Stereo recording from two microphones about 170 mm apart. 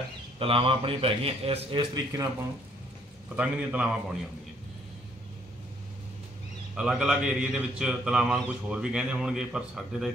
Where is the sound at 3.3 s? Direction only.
5° right (ahead or behind).